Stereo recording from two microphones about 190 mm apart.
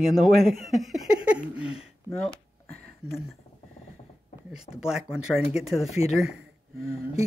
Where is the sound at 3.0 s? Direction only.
Centre (ahead or behind).